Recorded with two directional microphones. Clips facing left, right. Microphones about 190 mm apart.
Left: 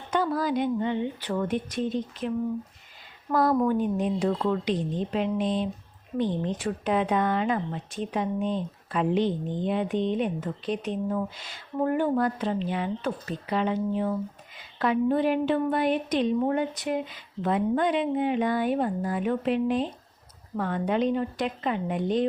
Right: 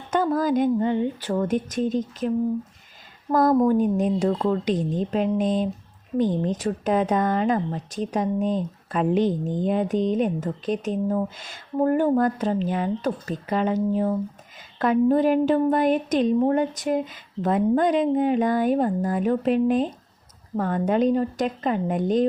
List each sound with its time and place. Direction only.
0.1 s speech: 45° right (ahead or behind)
3.3 s speech: 40° right (ahead or behind)